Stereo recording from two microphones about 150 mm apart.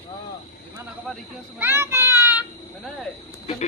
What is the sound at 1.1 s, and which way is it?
Speech, centre (ahead or behind).